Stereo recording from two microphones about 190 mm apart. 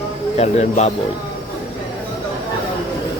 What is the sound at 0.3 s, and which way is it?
Speech, 35° left (ahead or behind).